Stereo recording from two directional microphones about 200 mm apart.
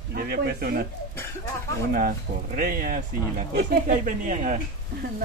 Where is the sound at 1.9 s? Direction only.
45° right (ahead or behind).